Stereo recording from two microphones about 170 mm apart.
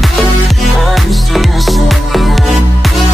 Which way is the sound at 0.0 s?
Centre (ahead or behind).